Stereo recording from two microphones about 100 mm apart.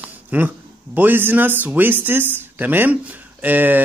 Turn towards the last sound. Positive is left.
turn(degrees=-15)  # may be behind; listen again after turning